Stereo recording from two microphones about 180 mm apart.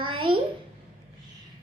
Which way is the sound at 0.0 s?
30° right (ahead or behind).